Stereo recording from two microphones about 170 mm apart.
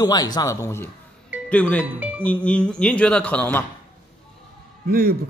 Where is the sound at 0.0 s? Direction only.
25° left (ahead or behind).